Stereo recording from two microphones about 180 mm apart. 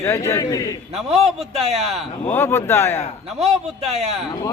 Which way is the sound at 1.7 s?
35° right (ahead or behind).